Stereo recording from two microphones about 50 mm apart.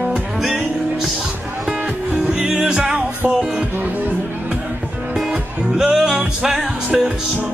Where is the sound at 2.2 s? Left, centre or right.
Centre.